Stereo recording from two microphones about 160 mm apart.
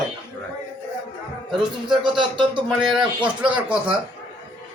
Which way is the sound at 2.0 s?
30° right (ahead or behind).